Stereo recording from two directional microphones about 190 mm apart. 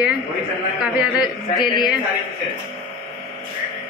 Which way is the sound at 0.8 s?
5° right (ahead or behind).